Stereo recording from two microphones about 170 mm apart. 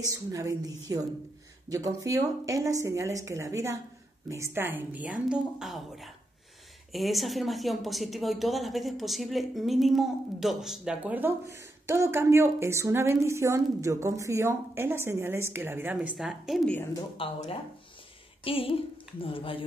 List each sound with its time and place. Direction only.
0.0 s speech: 20° right (ahead or behind); by 16.7 s centre (ahead or behind)
16.7 s speech: 15° left (ahead or behind)
17.2 s speech: 35° left (ahead or behind)